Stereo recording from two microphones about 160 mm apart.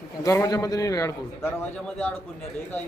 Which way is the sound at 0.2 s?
20° left (ahead or behind).